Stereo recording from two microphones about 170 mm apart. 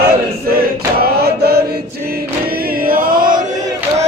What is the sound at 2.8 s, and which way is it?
Chant, 55° right (ahead or behind).